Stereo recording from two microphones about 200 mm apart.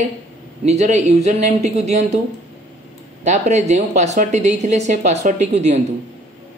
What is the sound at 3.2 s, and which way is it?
A woman's voice, 35° right (ahead or behind).